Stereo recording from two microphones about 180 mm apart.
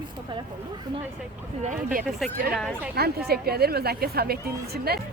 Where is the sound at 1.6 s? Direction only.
50° right (ahead or behind).